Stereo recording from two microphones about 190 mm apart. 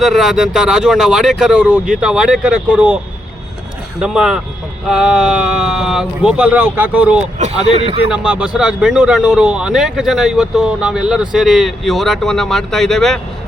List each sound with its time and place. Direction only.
0.0 s speech: centre (ahead or behind)
4.0 s speech: 5° right (ahead or behind)
7.3 s a man's voice: 35° right (ahead or behind)
8.1 s speech: 5° right (ahead or behind)